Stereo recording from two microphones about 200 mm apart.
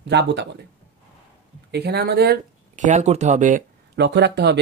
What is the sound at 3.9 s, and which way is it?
Speech, 60° right (ahead or behind).